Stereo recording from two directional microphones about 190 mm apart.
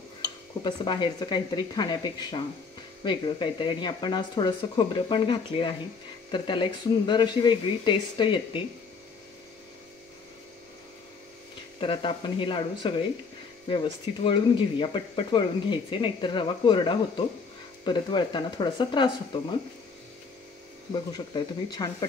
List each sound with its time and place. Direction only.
0.7 s speech: 25° left (ahead or behind)
11.8 s speech: 30° left (ahead or behind)
20.9 s speech: 25° left (ahead or behind)